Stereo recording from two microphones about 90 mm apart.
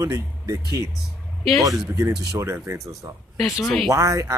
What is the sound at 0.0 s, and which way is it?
Speech, 35° right (ahead or behind).